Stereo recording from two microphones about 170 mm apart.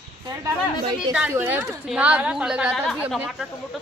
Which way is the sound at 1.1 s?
10° right (ahead or behind).